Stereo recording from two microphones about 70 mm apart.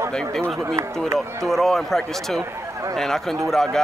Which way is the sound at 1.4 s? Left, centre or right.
Centre.